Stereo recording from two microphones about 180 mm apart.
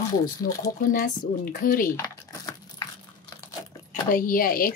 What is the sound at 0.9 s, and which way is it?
Speech, 50° left (ahead or behind).